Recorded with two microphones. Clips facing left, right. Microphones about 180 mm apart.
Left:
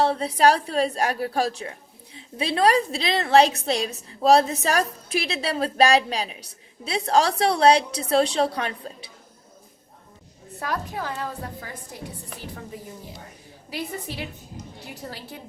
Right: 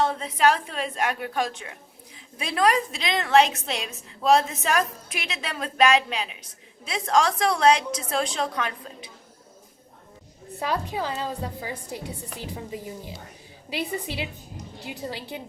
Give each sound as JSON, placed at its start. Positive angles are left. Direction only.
{"t": 0.0, "sound": "a woman's voice", "side_deg": 35}
{"t": 10.6, "sound": "a woman's voice", "side_deg": -20}
{"t": 13.7, "sound": "a woman's voice", "side_deg": -75}
{"t": 15.0, "sound": "a woman's voice", "side_deg": -20}